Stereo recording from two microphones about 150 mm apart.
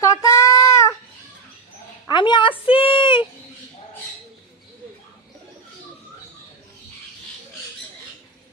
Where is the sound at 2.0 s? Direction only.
30° left (ahead or behind).